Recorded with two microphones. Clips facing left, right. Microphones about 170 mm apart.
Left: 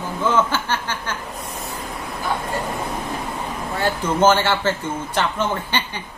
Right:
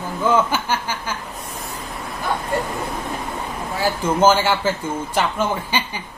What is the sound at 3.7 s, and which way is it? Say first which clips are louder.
Speech: right 1 dB; 10° right (ahead or behind).